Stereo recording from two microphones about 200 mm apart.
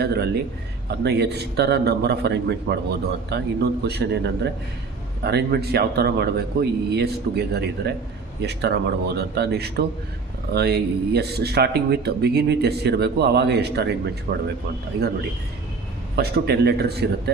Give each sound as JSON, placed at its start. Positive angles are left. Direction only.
{"t": 0.9, "sound": "speech", "side_deg": -55}
{"t": 16.1, "sound": "speech", "side_deg": -55}